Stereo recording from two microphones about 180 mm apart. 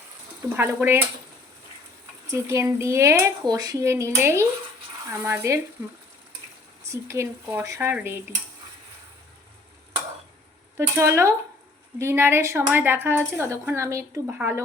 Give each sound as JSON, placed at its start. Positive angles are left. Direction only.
{"t": 0.5, "sound": "speech", "side_deg": -10}
{"t": 2.3, "sound": "speech", "side_deg": -15}
{"t": 6.8, "sound": "speech", "side_deg": -15}
{"t": 10.8, "sound": "speech", "side_deg": -15}